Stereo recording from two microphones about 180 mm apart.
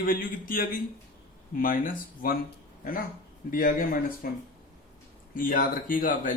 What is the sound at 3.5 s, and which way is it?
Speech, 50° left (ahead or behind).